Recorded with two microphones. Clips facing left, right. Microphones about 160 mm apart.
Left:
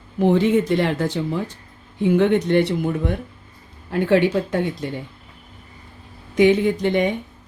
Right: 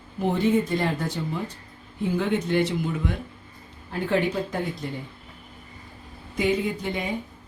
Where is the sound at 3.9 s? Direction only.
75° left (ahead or behind).